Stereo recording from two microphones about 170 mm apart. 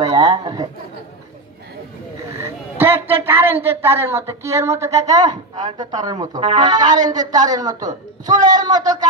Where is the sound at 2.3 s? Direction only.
15° right (ahead or behind).